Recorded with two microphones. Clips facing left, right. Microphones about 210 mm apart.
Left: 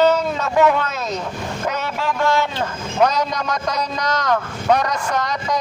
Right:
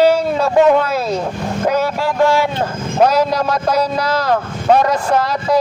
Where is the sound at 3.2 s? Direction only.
30° right (ahead or behind).